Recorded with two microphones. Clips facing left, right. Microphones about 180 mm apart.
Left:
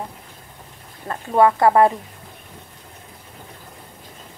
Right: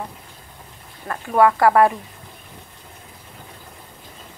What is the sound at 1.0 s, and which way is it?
Speech, 25° left (ahead or behind).